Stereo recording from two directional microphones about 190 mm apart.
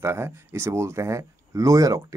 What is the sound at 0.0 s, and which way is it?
Speech, 15° right (ahead or behind).